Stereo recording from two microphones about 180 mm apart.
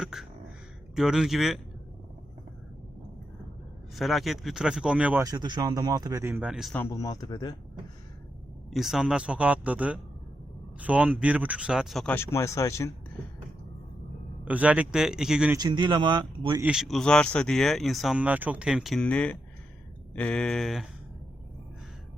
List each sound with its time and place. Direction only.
0.0 s a sound: 5° right (ahead or behind)
0.9 s speech: 5° right (ahead or behind)
3.9 s speech: centre (ahead or behind)
5.2 s speech: 20° right (ahead or behind); by 6.7 s 5° right (ahead or behind)
6.7 s speech: 15° left (ahead or behind)
8.7 s speech: centre (ahead or behind)
12.1 s speech: 15° left (ahead or behind)
14.4 s speech: 10° right (ahead or behind)
15.5 s speech: 25° right (ahead or behind)
16.6 s speech: 5° right (ahead or behind)